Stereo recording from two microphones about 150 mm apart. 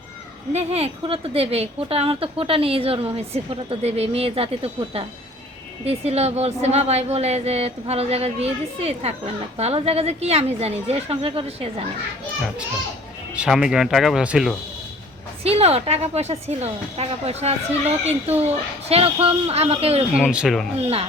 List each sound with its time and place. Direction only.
0.5 s a woman's voice: 45° right (ahead or behind)
13.3 s speech: 5° right (ahead or behind)
15.4 s a woman's voice: 45° right (ahead or behind)
20.1 s speech: 5° right (ahead or behind)